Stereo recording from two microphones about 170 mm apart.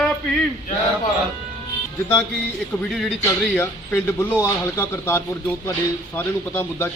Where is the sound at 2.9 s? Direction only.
5° left (ahead or behind).